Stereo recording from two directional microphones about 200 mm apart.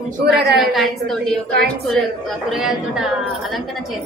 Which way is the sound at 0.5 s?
Centre (ahead or behind).